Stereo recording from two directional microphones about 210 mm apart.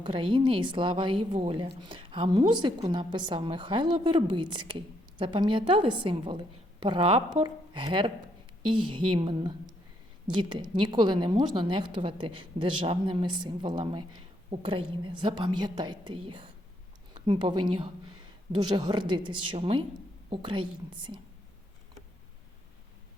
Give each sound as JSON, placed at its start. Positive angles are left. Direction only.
{"t": 0.0, "sound": "a woman's voice", "side_deg": -25}